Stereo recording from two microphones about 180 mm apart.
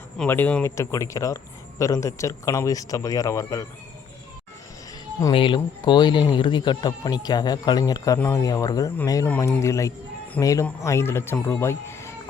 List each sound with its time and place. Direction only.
0.2 s speech: 10° left (ahead or behind)
5.3 s speech: 30° left (ahead or behind)